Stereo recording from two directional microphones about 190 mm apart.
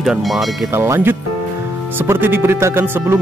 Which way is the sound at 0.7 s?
10° right (ahead or behind).